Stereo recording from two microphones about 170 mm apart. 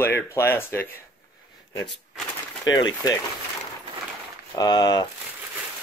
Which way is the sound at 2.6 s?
25° left (ahead or behind).